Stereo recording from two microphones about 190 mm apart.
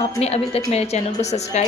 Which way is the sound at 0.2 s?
35° left (ahead or behind).